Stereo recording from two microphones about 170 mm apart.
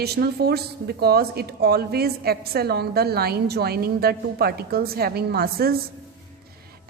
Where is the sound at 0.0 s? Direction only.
70° right (ahead or behind).